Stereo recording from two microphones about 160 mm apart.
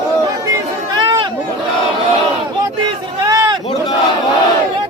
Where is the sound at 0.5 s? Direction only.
25° right (ahead or behind).